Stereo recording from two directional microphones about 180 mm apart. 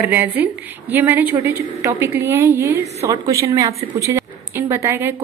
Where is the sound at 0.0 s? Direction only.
10° right (ahead or behind).